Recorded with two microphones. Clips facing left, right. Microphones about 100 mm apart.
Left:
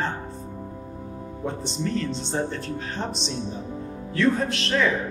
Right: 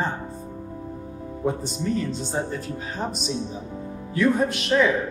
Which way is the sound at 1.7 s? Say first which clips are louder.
Right 1 dB; 10° right (ahead or behind).